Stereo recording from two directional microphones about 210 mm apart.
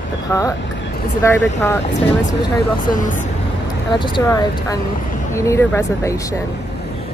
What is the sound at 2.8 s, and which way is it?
Speech, 40° left (ahead or behind).